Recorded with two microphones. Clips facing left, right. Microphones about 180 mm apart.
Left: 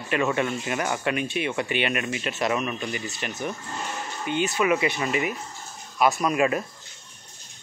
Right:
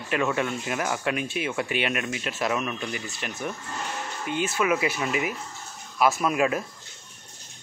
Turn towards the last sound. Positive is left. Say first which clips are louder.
# left 1 dB
turn(degrees=0)  # may be behind; listen again after turning